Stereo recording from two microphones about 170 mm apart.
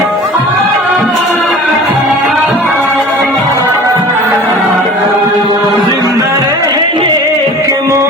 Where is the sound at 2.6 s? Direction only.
15° right (ahead or behind).